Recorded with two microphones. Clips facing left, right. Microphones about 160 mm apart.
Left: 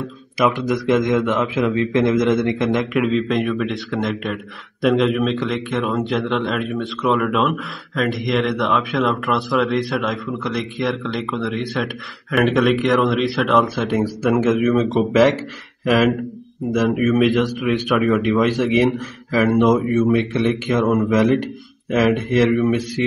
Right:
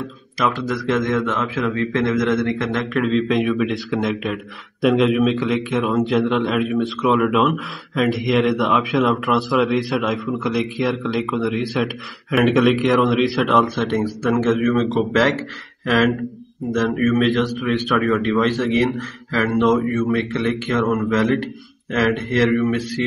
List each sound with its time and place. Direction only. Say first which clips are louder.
0.5 s a man's voice: left 3 dB; 20° left (ahead or behind)
3.0 s a man's voice: right 4 dB; centre (ahead or behind)
18.1 s a man's voice: left 1 dB; centre (ahead or behind)
18.4 s speech: left 2 dB; 15° left (ahead or behind)